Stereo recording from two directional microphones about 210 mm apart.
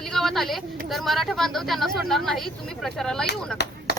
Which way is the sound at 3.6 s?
55° left (ahead or behind).